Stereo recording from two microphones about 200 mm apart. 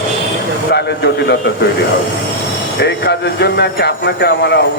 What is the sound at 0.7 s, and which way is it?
Speech, 55° left (ahead or behind).